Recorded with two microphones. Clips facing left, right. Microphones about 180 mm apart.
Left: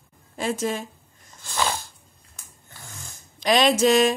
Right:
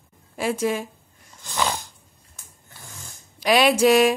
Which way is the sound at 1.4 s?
15° right (ahead or behind).